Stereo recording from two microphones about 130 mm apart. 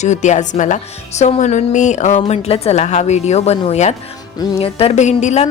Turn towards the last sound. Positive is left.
turn(degrees=60)  # may be behind; listen again after turning